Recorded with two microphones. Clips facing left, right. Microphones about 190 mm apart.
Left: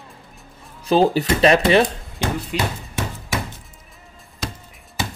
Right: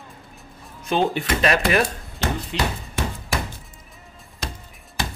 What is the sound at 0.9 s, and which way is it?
Speech, 35° left (ahead or behind).